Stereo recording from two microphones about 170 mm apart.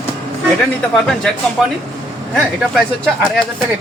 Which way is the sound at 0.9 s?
5° left (ahead or behind).